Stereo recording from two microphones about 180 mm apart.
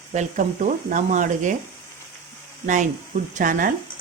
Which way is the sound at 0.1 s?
40° right (ahead or behind).